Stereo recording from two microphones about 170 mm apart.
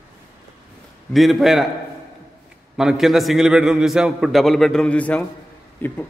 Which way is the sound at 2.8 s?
Centre (ahead or behind).